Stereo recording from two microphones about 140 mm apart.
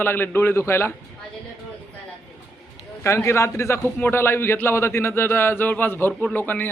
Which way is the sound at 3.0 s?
20° left (ahead or behind).